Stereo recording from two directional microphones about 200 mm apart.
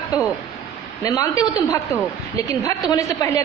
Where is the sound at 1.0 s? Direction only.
15° left (ahead or behind).